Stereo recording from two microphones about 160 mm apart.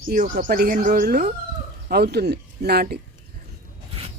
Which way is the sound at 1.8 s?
90° right.